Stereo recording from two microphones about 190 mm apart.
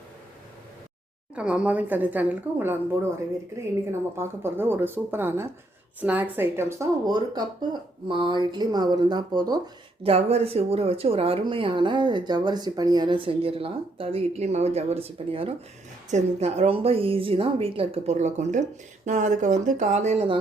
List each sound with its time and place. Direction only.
1.4 s a woman's voice: 5° right (ahead or behind)
4.2 s a woman's voice: 10° right (ahead or behind)
10.0 s a woman's voice: 30° right (ahead or behind)